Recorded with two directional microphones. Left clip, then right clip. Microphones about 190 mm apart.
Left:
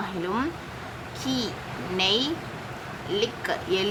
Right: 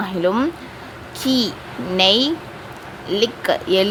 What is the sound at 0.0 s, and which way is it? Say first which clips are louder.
Speech: right 9 dB; 40° right (ahead or behind).